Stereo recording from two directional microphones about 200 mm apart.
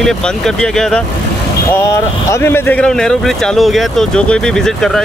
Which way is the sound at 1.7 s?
15° left (ahead or behind).